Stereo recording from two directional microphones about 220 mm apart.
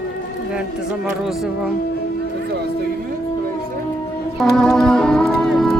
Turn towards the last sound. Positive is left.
turn(degrees=0)  # may be behind; listen again after turning